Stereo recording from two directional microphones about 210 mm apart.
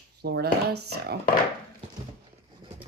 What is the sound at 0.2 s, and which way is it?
Speech, 50° right (ahead or behind).